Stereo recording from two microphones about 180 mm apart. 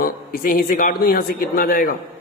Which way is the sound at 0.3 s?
50° left (ahead or behind).